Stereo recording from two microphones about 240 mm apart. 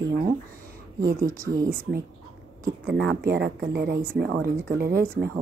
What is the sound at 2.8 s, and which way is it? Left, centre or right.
Speech, right.